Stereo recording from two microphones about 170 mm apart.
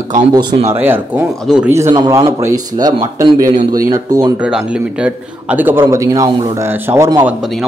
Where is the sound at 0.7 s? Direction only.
15° right (ahead or behind).